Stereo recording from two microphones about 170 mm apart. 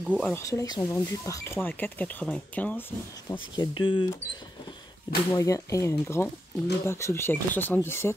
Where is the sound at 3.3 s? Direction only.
25° left (ahead or behind).